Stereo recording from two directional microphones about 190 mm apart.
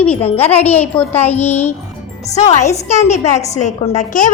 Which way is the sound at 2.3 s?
35° left (ahead or behind).